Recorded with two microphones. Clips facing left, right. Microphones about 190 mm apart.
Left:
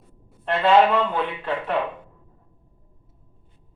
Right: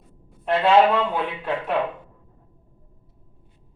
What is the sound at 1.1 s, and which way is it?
Speech, 10° right (ahead or behind).